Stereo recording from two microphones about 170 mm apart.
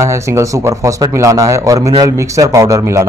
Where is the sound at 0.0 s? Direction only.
15° right (ahead or behind).